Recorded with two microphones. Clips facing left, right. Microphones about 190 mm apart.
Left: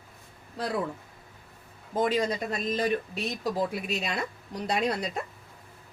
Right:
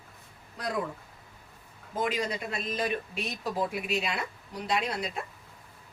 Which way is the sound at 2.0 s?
35° left (ahead or behind).